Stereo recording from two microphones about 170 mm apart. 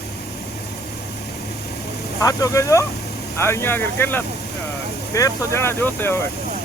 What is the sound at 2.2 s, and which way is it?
Speech, 20° left (ahead or behind).